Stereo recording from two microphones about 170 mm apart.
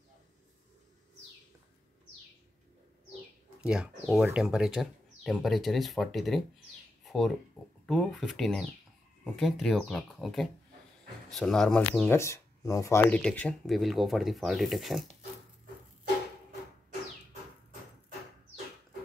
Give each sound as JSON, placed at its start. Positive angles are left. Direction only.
{"t": 3.6, "sound": "speech", "side_deg": -5}
{"t": 12.2, "sound": "speech", "side_deg": 20}